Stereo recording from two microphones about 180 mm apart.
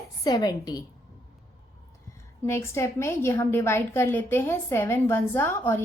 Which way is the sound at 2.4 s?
15° left (ahead or behind).